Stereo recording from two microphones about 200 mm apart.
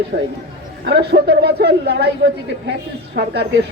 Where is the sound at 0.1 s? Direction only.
50° right (ahead or behind).